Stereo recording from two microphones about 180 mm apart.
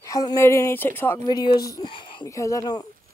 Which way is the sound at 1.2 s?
25° left (ahead or behind).